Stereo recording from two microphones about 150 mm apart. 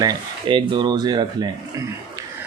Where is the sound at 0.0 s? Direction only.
30° right (ahead or behind).